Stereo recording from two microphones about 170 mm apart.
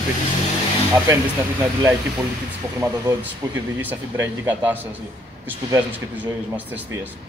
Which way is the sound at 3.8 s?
10° right (ahead or behind).